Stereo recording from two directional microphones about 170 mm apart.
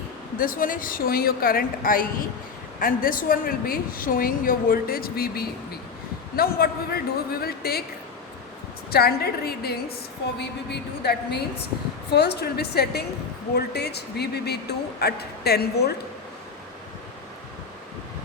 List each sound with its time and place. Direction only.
0.3 s a woman's voice: 55° left (ahead or behind)
8.9 s speech: 65° left (ahead or behind)
10.3 s speech: 80° left